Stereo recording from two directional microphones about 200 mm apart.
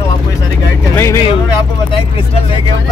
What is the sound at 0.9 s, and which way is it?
Speech, 15° left (ahead or behind).